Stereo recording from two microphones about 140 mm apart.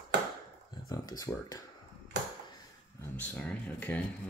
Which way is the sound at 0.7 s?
30° left (ahead or behind).